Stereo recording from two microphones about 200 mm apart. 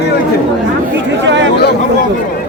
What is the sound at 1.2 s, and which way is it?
Speech, 65° right (ahead or behind).